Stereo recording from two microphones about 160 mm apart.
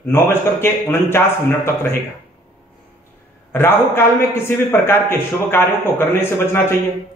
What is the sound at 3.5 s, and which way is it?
Speech, 15° left (ahead or behind).